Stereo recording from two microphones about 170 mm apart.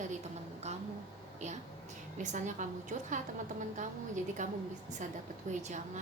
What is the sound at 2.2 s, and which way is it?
A woman's voice, 45° right (ahead or behind).